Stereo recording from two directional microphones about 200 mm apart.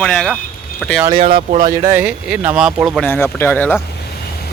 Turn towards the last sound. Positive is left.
turn(degrees=10)  # may be behind; listen again after turning